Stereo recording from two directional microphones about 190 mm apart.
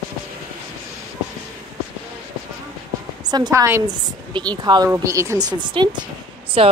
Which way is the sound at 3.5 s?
10° right (ahead or behind).